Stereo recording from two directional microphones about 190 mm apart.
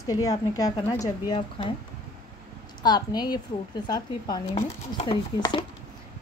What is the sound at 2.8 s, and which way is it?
A woman's voice, 20° left (ahead or behind).